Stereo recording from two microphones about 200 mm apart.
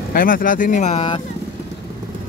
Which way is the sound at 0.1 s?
45° left (ahead or behind).